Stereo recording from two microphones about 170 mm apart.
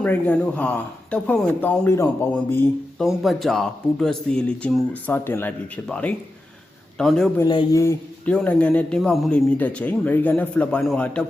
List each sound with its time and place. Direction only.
0.0 s speech: 10° left (ahead or behind)
3.0 s speech: centre (ahead or behind)
7.3 s speech: 25° left (ahead or behind)
8.2 s speech: 5° left (ahead or behind)